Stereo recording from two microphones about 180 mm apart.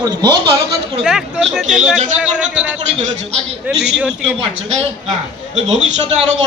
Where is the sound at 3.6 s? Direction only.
5° right (ahead or behind).